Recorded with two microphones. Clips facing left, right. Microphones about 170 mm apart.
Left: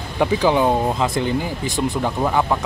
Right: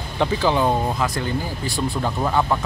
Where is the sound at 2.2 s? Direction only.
5° left (ahead or behind).